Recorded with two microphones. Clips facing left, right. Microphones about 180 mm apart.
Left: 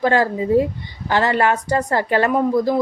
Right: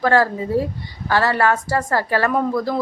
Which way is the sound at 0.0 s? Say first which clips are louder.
Even; 15° left (ahead or behind).